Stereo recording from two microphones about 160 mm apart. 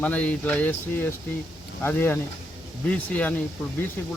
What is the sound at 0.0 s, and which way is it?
Speech, 10° left (ahead or behind).